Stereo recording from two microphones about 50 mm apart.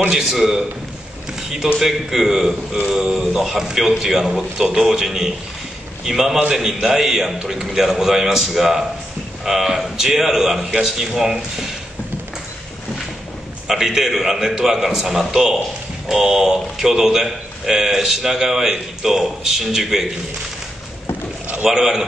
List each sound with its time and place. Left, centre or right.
0.1 s a man's voice: centre
1.8 s a man's voice: centre
13.7 s a man's voice: centre
21.6 s a man's voice: centre